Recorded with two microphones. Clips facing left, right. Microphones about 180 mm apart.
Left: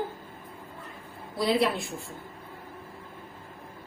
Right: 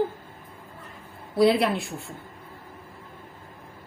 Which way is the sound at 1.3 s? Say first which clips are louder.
Right 5 dB; 65° right (ahead or behind).